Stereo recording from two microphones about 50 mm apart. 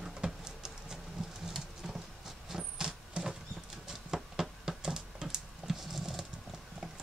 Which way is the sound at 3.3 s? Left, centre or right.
Centre.